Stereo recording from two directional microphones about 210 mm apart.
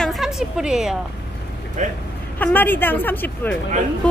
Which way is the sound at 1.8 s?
35° right (ahead or behind).